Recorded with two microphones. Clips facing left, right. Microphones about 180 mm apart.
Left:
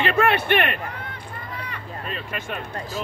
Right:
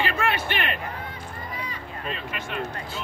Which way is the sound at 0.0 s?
60° left (ahead or behind).